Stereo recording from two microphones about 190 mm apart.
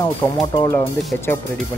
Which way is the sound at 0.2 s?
10° left (ahead or behind).